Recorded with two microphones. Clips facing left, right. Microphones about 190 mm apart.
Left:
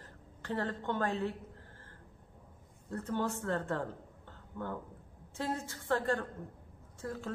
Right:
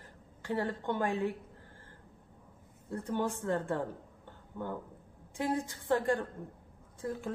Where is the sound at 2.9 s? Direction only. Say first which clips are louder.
Right 1 dB; 10° right (ahead or behind).